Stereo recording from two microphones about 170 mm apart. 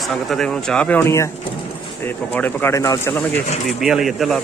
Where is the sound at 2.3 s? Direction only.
10° left (ahead or behind).